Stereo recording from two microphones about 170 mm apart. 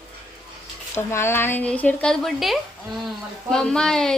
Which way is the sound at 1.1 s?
15° left (ahead or behind).